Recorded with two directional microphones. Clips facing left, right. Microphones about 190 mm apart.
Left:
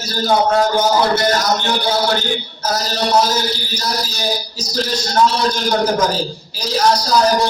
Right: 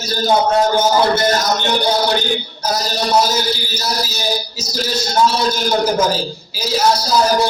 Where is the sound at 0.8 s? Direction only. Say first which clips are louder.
Right 1 dB; 20° right (ahead or behind).